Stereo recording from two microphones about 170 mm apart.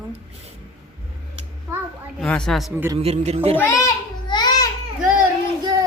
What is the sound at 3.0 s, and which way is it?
Child singing, 40° right (ahead or behind).